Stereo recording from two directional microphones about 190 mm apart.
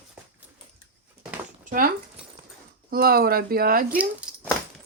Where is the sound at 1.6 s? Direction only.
50° right (ahead or behind).